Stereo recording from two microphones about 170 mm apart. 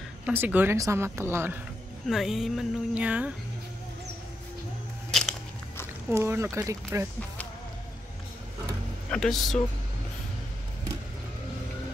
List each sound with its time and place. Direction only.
0.2 s speech: 10° right (ahead or behind)
2.0 s speech: centre (ahead or behind)
5.1 s a sound: centre (ahead or behind)
6.0 s speech: 15° right (ahead or behind)
9.1 s speech: 5° left (ahead or behind)